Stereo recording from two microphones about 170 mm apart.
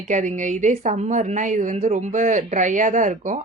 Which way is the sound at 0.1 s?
45° right (ahead or behind).